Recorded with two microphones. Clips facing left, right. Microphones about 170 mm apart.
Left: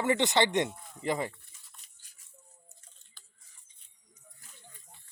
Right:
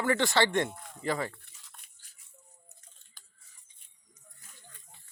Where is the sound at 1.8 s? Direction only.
55° right (ahead or behind).